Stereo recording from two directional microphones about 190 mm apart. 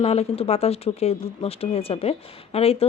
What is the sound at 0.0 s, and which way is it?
Speech, 30° left (ahead or behind).